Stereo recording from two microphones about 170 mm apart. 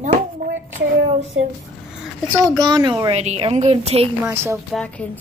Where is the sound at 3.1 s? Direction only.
40° right (ahead or behind).